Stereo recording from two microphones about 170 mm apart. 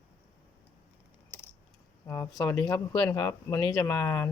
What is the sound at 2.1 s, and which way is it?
Speech, 15° left (ahead or behind).